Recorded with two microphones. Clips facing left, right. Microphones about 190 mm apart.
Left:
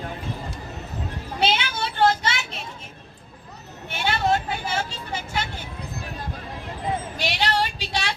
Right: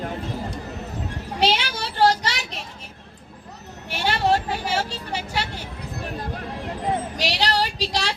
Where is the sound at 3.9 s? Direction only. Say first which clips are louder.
Right 2 dB; 35° right (ahead or behind).